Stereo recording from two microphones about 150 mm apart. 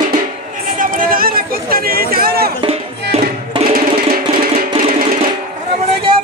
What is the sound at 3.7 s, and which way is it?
Music, 75° right (ahead or behind).